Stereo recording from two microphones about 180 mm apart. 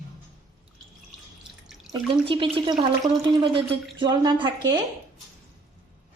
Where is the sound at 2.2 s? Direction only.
30° right (ahead or behind).